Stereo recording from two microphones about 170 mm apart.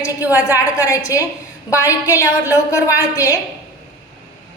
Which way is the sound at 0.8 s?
20° left (ahead or behind).